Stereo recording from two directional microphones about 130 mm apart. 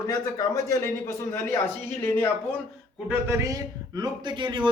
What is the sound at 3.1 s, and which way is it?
A man's voice, 20° right (ahead or behind).